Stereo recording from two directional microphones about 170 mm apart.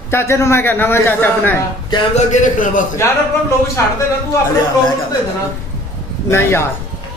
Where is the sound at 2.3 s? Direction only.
50° left (ahead or behind).